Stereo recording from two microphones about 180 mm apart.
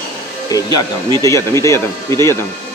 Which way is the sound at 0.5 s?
20° left (ahead or behind).